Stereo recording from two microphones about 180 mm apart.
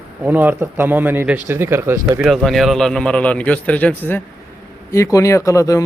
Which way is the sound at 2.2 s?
Centre (ahead or behind).